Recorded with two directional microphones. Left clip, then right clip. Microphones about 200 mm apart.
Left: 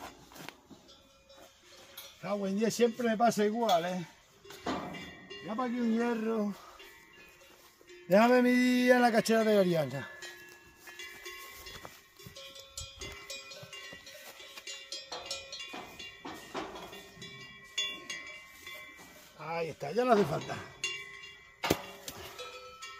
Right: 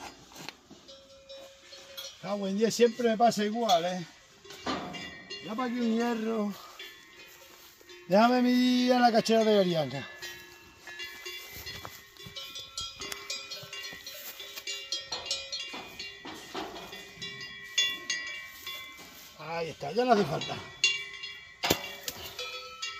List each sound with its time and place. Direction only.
0.0 s music: 10° right (ahead or behind)
2.4 s speech: 5° right (ahead or behind)
5.6 s speech: 5° right (ahead or behind)
8.1 s a man's voice: 10° left (ahead or behind)
12.5 s cowbell: 35° left (ahead or behind)
17.2 s train: 40° left (ahead or behind)
19.3 s a sound: 10° left (ahead or behind)
20.3 s a sound: 55° left (ahead or behind)
21.6 s music: 10° left (ahead or behind)
22.4 s music: 55° left (ahead or behind)